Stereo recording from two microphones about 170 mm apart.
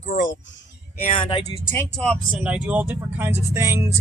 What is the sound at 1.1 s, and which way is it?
Speech, 35° left (ahead or behind).